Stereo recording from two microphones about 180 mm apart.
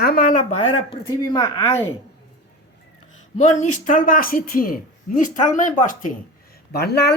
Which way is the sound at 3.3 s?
40° left (ahead or behind).